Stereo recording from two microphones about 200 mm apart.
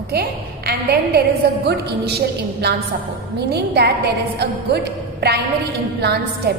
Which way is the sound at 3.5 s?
55° right (ahead or behind).